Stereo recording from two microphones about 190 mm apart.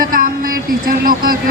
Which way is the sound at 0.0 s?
45° right (ahead or behind).